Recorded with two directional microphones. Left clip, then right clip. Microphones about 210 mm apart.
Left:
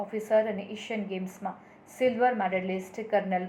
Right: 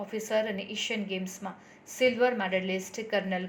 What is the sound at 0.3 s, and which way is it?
A woman's voice, 45° right (ahead or behind).